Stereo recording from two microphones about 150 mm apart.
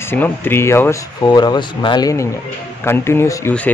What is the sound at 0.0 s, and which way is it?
Speech, 15° left (ahead or behind).